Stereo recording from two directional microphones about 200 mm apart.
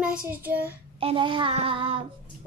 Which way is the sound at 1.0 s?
25° right (ahead or behind).